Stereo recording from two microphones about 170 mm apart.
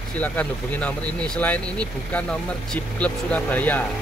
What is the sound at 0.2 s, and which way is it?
Speech, 10° left (ahead or behind).